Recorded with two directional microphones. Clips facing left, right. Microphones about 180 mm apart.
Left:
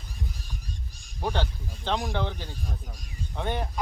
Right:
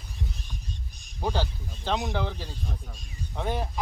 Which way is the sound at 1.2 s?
5° right (ahead or behind).